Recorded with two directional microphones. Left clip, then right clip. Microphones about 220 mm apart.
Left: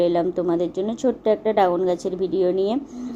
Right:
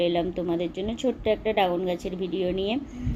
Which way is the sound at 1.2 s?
55° left (ahead or behind).